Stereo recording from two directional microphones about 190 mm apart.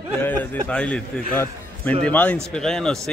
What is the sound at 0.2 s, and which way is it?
A man's voice, 10° left (ahead or behind).